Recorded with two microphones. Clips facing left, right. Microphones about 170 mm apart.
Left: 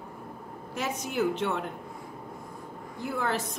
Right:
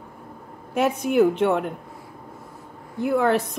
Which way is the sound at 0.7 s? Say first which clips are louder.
Right 12 dB; 60° right (ahead or behind).